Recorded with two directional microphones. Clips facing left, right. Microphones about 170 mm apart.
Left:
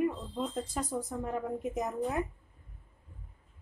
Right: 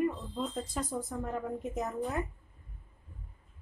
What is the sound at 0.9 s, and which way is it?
A woman's voice, 10° left (ahead or behind).